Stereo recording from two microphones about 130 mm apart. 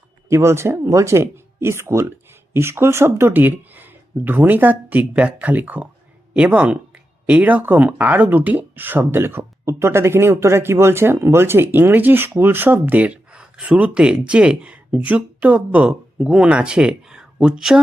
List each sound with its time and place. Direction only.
0.3 s speech: 20° right (ahead or behind); by 17.7 s 5° right (ahead or behind)